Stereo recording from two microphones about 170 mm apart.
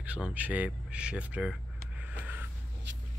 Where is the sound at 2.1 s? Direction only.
10° right (ahead or behind).